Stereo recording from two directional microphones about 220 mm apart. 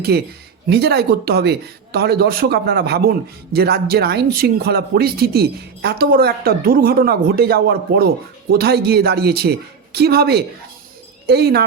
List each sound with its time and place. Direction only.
0.1 s speech: 45° right (ahead or behind)